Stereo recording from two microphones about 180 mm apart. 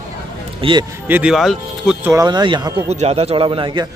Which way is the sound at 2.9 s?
35° right (ahead or behind).